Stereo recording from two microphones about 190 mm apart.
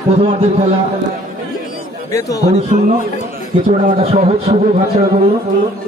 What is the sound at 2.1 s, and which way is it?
Speech, 20° left (ahead or behind).